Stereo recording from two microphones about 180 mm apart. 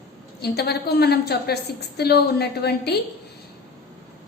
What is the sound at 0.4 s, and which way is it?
A woman's voice, 65° left (ahead or behind).